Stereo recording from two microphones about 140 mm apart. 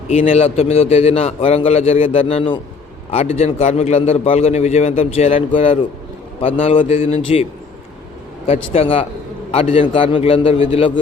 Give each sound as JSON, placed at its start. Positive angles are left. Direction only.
{"t": 0.1, "sound": "a man's voice", "side_deg": 45}
{"t": 8.4, "sound": "a man's voice", "side_deg": 45}